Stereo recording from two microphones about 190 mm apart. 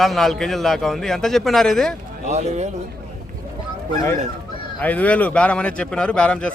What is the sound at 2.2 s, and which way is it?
Speech, 35° right (ahead or behind).